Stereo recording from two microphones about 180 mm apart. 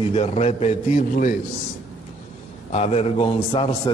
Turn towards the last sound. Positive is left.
turn(degrees=30)  # may be behind; listen again after turning